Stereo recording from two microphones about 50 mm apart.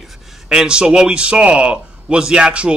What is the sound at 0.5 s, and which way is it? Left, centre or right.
A man's voice, centre.